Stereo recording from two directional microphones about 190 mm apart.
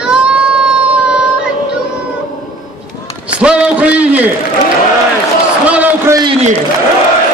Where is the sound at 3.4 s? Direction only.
5° right (ahead or behind).